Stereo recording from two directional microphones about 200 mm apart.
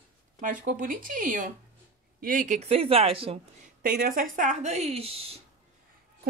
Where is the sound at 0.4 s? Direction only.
40° right (ahead or behind).